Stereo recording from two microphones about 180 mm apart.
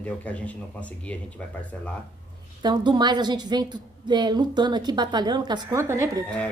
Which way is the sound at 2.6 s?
25° right (ahead or behind).